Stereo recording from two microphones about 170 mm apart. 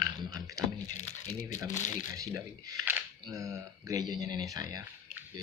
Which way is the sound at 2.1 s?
20° right (ahead or behind).